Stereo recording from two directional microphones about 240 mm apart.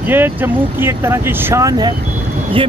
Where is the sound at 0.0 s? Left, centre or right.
Centre.